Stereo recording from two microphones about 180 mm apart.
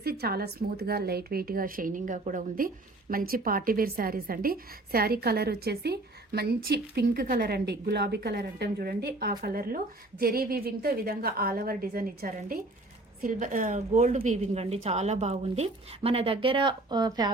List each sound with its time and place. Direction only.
0.0 s speech: 60° right (ahead or behind); by 17.3 s 25° right (ahead or behind)